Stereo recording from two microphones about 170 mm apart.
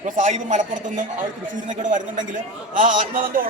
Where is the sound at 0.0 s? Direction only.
45° right (ahead or behind).